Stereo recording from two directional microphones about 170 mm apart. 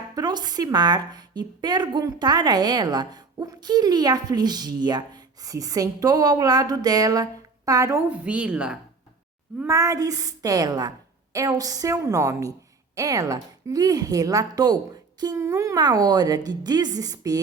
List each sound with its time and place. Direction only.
0.2 s a woman's voice: 25° right (ahead or behind); by 8.8 s 5° right (ahead or behind)
9.6 s a woman's voice: 15° right (ahead or behind)